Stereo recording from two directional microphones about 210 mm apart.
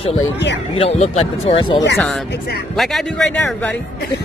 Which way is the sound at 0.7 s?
30° left (ahead or behind).